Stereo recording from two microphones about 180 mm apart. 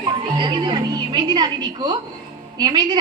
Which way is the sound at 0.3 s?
25° right (ahead or behind).